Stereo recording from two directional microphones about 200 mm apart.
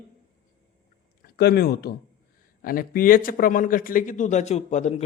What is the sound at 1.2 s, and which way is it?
A man's voice, 55° left (ahead or behind).